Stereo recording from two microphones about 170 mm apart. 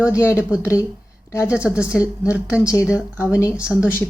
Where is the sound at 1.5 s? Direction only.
5° right (ahead or behind).